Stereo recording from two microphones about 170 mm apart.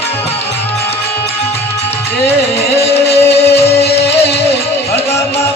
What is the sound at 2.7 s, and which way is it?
Music, 35° left (ahead or behind).